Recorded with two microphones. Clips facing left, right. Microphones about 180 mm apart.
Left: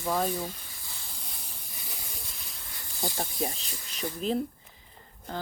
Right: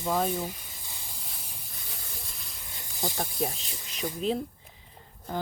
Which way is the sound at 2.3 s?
Centre (ahead or behind).